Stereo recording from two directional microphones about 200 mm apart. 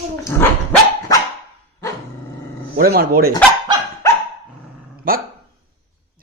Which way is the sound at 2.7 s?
50° right (ahead or behind).